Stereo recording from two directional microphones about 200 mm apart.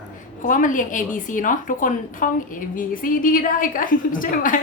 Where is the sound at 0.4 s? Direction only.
40° left (ahead or behind).